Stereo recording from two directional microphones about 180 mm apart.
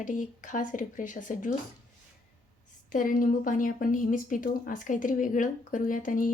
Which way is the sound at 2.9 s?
50° left (ahead or behind).